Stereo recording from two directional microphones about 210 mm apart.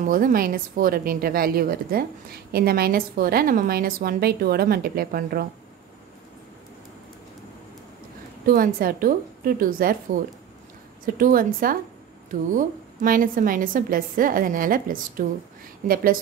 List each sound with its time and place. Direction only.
0.0 s a woman's voice: 40° right (ahead or behind)
8.5 s a woman's voice: 45° right (ahead or behind)
11.1 s a woman's voice: 40° right (ahead or behind)